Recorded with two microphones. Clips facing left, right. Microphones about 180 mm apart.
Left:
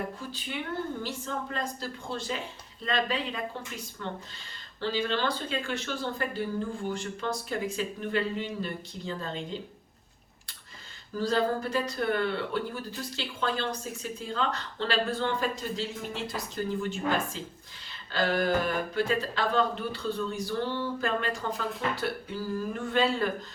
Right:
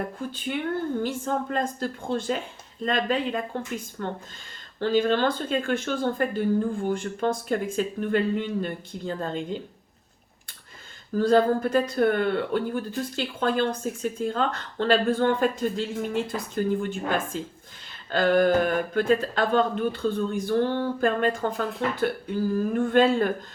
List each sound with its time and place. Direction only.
0.2 s speech: 50° right (ahead or behind)
11.2 s speech: 50° right (ahead or behind)